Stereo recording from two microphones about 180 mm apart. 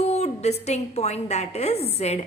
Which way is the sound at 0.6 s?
35° left (ahead or behind).